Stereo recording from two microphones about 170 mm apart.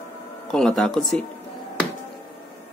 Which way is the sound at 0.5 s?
5° left (ahead or behind).